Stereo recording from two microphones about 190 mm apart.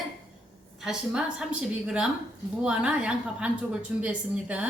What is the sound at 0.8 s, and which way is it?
A woman's voice, 5° right (ahead or behind).